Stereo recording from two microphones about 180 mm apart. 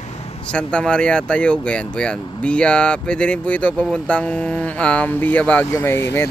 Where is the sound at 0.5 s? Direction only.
5° left (ahead or behind).